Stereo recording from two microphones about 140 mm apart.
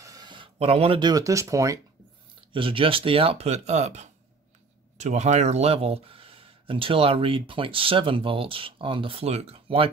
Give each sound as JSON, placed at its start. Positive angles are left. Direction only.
{"t": 0.0, "sound": "a sound", "side_deg": -30}
{"t": 1.0, "sound": "speech", "side_deg": -25}
{"t": 2.5, "sound": "speech", "side_deg": -40}